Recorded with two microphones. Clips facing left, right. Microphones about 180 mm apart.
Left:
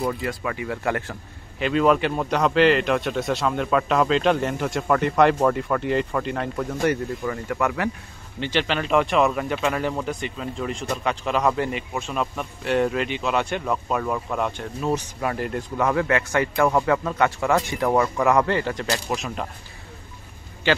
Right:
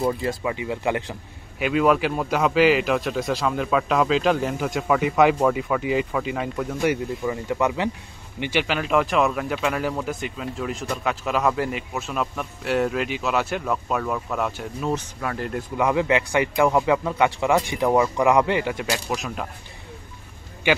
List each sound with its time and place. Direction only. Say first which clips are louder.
0.2 s speech: right 2 dB; 20° right (ahead or behind)
1.6 s speech: even; 5° right (ahead or behind)
15.1 s speech: left 2 dB; 15° left (ahead or behind)
15.5 s speech: right 3 dB; 10° right (ahead or behind)
20.7 s speech: even; 10° right (ahead or behind)